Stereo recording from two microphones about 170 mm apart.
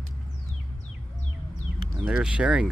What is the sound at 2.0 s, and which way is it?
Speech, 5° right (ahead or behind).